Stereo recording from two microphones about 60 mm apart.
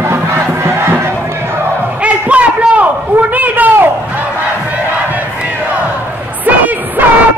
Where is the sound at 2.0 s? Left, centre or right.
Right.